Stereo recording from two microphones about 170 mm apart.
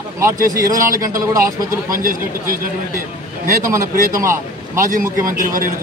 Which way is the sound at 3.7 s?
15° right (ahead or behind).